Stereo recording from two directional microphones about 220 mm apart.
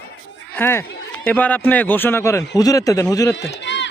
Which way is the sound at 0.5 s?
10° left (ahead or behind).